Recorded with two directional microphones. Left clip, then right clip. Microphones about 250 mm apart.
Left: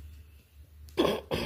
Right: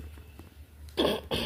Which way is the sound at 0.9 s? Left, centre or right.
Left.